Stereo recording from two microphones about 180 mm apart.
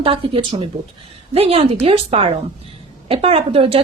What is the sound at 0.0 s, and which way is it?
A woman's voice, 30° right (ahead or behind).